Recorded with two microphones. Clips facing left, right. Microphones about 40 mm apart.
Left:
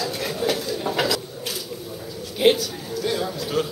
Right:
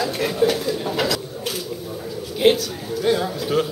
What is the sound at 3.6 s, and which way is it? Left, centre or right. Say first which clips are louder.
Speech: right 2 dB; centre.